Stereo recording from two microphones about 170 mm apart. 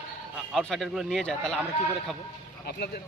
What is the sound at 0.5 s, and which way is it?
A man's voice, centre (ahead or behind).